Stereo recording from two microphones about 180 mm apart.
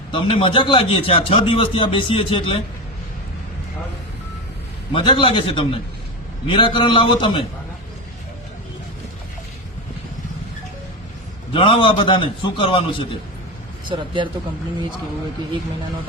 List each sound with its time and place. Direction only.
0.1 s a man's voice: 30° left (ahead or behind)
4.9 s a man's voice: 30° left (ahead or behind)
11.5 s a man's voice: 30° left (ahead or behind)
13.8 s a man's voice: 25° right (ahead or behind)